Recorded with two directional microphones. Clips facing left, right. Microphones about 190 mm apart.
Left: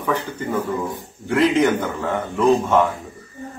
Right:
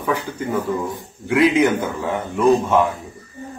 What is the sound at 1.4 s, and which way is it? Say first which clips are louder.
A man's voice: right 1 dB; 10° right (ahead or behind).